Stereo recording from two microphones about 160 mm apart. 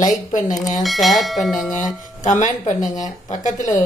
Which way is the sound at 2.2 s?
50° left (ahead or behind).